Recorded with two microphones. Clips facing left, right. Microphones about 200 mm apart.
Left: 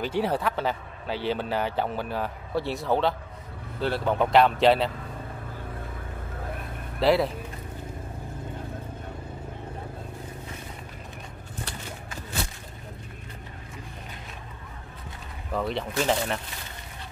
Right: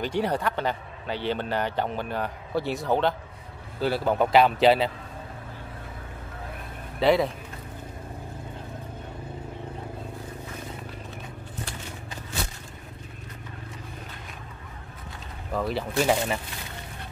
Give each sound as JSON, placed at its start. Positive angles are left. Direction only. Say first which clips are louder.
{"t": 0.0, "sound": "a man's voice", "louder": "even", "side_deg": 5}
{"t": 7.0, "sound": "a man's voice", "louder": "right 1 dB", "side_deg": 0}
{"t": 15.5, "sound": "a man's voice", "louder": "right 1 dB", "side_deg": -5}